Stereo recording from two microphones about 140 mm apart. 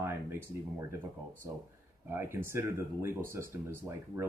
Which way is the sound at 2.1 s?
15° right (ahead or behind).